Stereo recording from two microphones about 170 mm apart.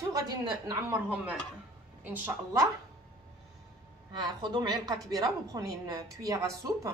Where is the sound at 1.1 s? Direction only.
5° right (ahead or behind).